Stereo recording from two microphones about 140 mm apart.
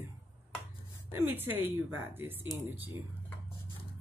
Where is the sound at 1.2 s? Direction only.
15° right (ahead or behind).